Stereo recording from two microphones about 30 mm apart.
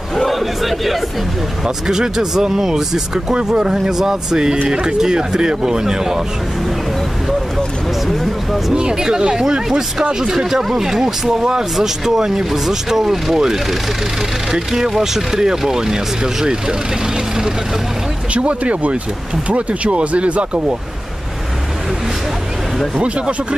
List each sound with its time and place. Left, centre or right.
0.1 s a sound: centre
1.9 s speech: centre
8.7 s speech: right
18.3 s speech: right
22.9 s speech: right